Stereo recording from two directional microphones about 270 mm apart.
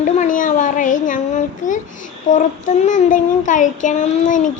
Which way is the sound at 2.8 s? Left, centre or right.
Left.